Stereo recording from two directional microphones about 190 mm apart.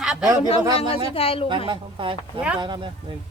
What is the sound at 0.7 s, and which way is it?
Speech, 30° left (ahead or behind).